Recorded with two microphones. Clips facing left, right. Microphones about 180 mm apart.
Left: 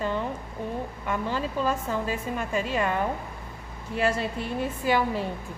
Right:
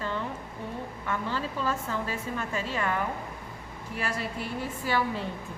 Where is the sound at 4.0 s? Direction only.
25° left (ahead or behind).